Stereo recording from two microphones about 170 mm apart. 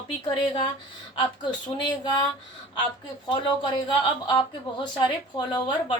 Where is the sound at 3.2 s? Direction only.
30° left (ahead or behind).